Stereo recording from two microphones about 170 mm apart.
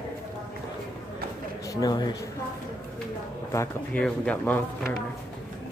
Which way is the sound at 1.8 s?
25° left (ahead or behind).